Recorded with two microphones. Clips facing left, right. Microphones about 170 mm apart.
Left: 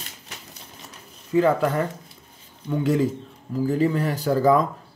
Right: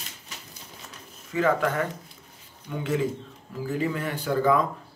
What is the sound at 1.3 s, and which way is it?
Speech, 30° left (ahead or behind).